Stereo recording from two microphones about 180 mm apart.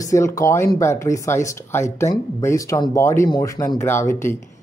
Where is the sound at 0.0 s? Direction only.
15° left (ahead or behind).